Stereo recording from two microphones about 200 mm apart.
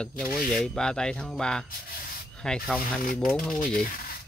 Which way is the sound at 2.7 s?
Centre (ahead or behind).